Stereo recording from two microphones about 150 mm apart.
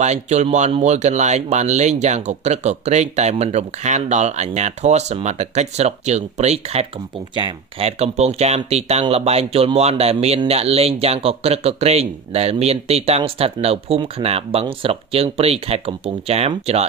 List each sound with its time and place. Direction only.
0.0 s speech: 50° right (ahead or behind)